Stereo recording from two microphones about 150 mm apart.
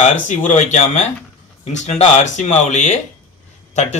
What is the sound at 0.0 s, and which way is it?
Speech, 55° left (ahead or behind).